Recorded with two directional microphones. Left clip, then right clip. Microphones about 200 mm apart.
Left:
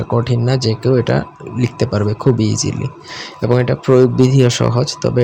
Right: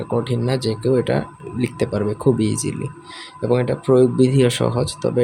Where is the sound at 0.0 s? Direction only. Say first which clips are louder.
Left 4 dB; 10° left (ahead or behind).